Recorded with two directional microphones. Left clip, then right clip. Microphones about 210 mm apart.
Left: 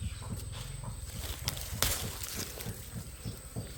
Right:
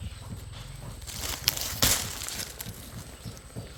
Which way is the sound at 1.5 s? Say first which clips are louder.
Right 11 dB; 20° right (ahead or behind).